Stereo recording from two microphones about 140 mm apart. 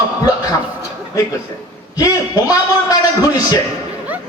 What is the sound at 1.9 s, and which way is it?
A man's voice, 25° left (ahead or behind).